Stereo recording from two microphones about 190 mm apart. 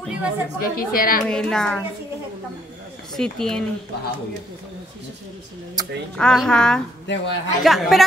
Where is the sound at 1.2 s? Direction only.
5° left (ahead or behind).